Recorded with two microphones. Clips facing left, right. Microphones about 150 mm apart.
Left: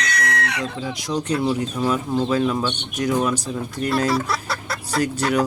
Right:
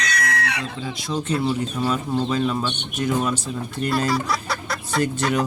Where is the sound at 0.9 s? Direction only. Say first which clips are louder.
Left 1 dB; 15° left (ahead or behind).